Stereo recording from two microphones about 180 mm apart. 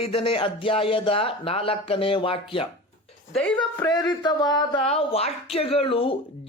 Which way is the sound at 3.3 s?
5° left (ahead or behind).